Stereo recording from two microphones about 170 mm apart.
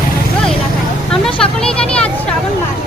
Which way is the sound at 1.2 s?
5° left (ahead or behind).